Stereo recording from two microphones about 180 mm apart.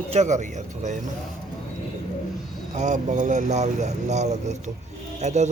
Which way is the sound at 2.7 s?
40° right (ahead or behind).